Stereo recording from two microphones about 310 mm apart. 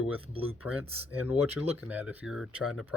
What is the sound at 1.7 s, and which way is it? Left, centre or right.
Speech, centre.